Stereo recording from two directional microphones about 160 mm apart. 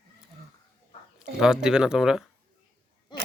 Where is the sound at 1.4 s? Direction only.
5° right (ahead or behind).